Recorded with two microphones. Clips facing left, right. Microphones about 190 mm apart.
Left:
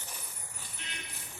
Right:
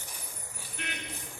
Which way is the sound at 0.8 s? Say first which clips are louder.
Right 11 dB; 65° right (ahead or behind).